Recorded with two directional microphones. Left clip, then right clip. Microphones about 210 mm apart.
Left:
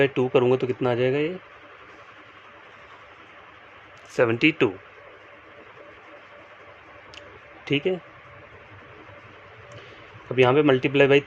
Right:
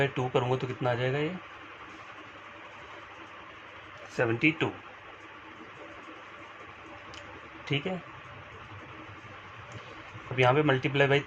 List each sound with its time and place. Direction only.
0.0 s speech: 55° left (ahead or behind)
4.1 s speech: 40° left (ahead or behind)
4.4 s speech: 60° left (ahead or behind)
7.6 s speech: 55° left (ahead or behind)
10.3 s speech: 55° left (ahead or behind)